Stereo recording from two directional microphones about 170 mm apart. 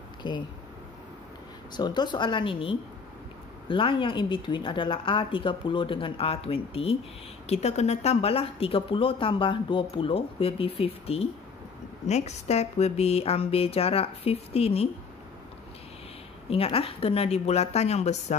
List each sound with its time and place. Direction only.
0.2 s speech: 30° left (ahead or behind)
1.8 s speech: 25° left (ahead or behind)
16.4 s speech: 35° left (ahead or behind)